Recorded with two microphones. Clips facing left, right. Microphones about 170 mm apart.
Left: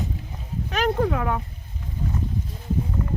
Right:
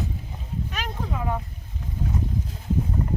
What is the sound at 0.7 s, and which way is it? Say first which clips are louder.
Speech: left 13 dB; 70° left (ahead or behind).